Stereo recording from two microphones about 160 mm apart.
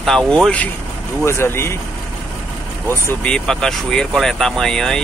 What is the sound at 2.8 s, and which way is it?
Speech, 15° left (ahead or behind).